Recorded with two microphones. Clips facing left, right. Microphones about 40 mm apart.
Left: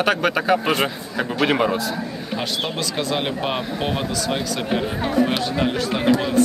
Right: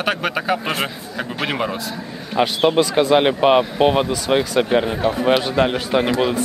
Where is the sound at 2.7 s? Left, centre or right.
Right.